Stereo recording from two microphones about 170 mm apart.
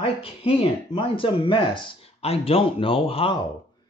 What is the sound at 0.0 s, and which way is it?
Speech, 35° left (ahead or behind).